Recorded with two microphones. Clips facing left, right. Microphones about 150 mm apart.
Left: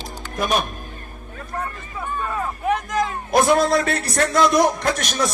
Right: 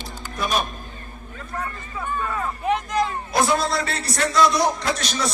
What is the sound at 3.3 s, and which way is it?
A man's voice, 55° left (ahead or behind).